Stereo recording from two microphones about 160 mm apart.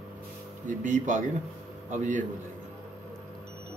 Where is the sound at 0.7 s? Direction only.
50° right (ahead or behind).